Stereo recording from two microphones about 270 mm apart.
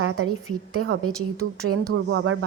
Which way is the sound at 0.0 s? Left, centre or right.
Right.